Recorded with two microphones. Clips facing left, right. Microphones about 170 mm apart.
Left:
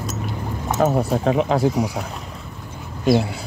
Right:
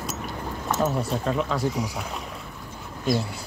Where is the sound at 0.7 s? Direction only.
55° left (ahead or behind).